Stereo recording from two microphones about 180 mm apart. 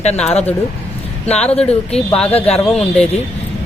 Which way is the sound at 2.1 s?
10° left (ahead or behind).